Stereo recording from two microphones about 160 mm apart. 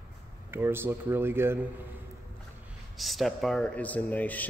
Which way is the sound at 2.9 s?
Centre (ahead or behind).